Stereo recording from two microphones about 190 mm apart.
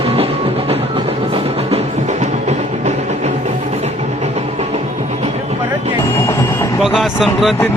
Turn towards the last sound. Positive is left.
turn(degrees=0)  # may be behind; listen again after turning